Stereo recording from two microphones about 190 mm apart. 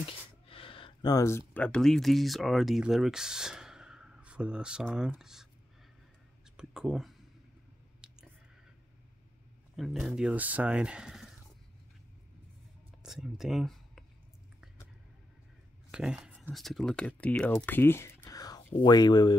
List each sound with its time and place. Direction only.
0.0 s a sound: 30° left (ahead or behind)
1.5 s speech: 5° left (ahead or behind)
6.5 s speech: 5° right (ahead or behind)
9.8 s speech: centre (ahead or behind)
13.0 s speech: centre (ahead or behind)
15.9 s a sound: 5° right (ahead or behind)
16.4 s speech: centre (ahead or behind)
17.6 s a sound: 10° left (ahead or behind)
18.8 s speech: 20° left (ahead or behind)